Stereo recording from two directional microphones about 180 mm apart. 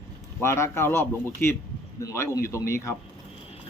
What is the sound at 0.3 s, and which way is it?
A man's voice, 15° left (ahead or behind).